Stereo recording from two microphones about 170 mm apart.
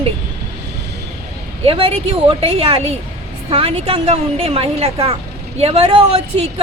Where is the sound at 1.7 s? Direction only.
30° right (ahead or behind).